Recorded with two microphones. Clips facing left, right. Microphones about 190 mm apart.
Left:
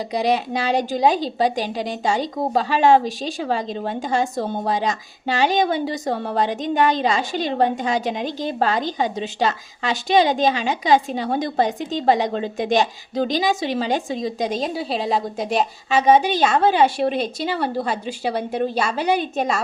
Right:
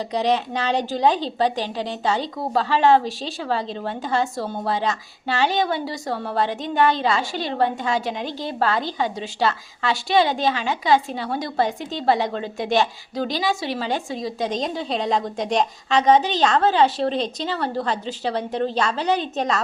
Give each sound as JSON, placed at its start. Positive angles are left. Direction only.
{"t": 0.1, "sound": "a woman's voice", "side_deg": 10}